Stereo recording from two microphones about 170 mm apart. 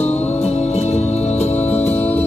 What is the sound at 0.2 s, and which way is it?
Music, 40° left (ahead or behind).